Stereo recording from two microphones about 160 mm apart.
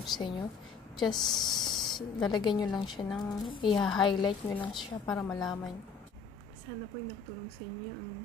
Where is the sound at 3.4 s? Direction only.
30° left (ahead or behind).